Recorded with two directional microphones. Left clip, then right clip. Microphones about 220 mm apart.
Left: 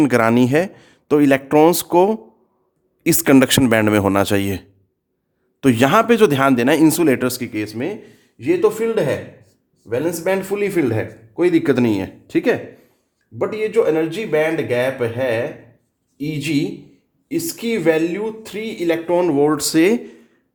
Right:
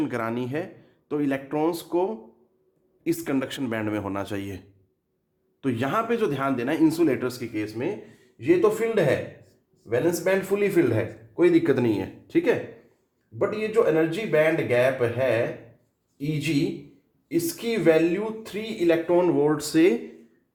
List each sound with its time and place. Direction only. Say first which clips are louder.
0.0 s speech: left 13 dB; 45° left (ahead or behind)